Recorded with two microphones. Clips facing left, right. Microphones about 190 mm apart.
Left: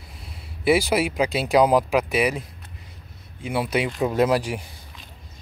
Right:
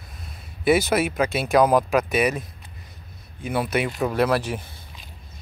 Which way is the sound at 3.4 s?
10° left (ahead or behind).